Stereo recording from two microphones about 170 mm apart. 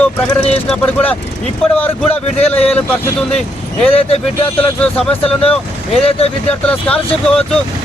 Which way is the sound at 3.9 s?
35° left (ahead or behind).